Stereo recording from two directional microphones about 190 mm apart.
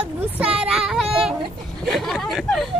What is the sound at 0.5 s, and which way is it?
Speech, 5° right (ahead or behind).